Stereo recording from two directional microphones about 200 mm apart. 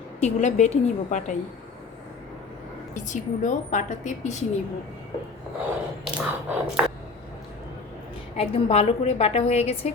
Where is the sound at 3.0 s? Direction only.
40° left (ahead or behind).